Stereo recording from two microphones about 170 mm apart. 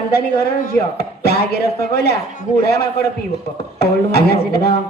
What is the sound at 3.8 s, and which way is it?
Speech, 70° left (ahead or behind).